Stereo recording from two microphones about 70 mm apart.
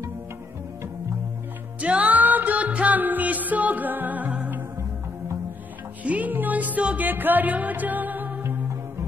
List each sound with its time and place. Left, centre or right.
1.8 s music: centre
6.0 s music: right